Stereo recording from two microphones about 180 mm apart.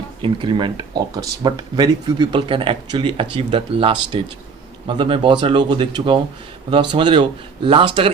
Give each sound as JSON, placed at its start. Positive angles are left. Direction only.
{"t": 0.2, "sound": "speech", "side_deg": -25}